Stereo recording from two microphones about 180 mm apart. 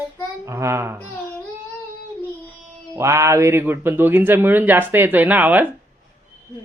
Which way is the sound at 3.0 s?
15° right (ahead or behind).